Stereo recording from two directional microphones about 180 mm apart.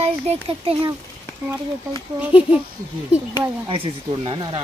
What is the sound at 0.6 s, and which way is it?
Speech, 30° right (ahead or behind).